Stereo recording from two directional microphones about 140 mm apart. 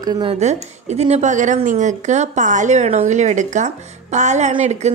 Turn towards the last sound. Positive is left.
turn(degrees=-55)  # may be behind; listen again after turning